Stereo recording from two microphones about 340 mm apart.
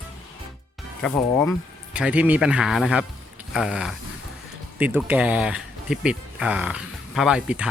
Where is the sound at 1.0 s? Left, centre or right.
Centre.